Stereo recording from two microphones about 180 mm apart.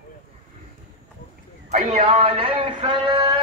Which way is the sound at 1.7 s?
40° right (ahead or behind).